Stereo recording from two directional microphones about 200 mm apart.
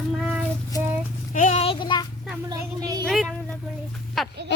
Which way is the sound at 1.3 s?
35° left (ahead or behind).